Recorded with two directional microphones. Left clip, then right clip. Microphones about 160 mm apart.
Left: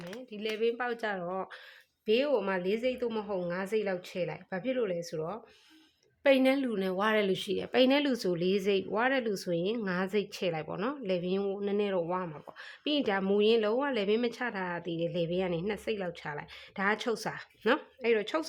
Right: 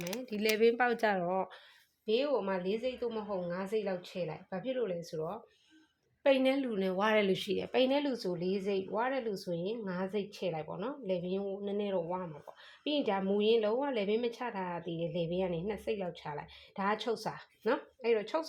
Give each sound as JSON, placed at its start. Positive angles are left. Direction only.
{"t": 0.1, "sound": "speech", "side_deg": -30}
{"t": 1.2, "sound": "speech", "side_deg": -15}
{"t": 2.0, "sound": "a woman's voice", "side_deg": 30}
{"t": 6.2, "sound": "a woman's voice", "side_deg": 25}
{"t": 7.8, "sound": "a woman's voice", "side_deg": 25}